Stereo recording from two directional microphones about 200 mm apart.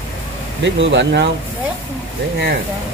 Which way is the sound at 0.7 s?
65° right (ahead or behind).